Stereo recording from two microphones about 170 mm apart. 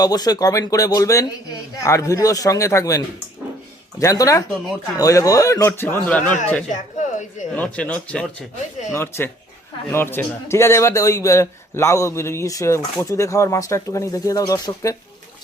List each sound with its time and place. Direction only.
0.0 s speech: 20° left (ahead or behind)
4.0 s a man's voice: 20° left (ahead or behind)
7.0 s a sound: 45° left (ahead or behind)
7.5 s a man's voice: 10° left (ahead or behind)